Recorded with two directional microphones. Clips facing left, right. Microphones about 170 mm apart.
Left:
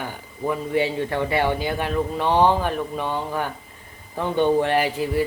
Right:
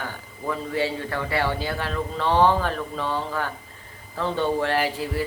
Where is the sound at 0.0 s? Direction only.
20° left (ahead or behind).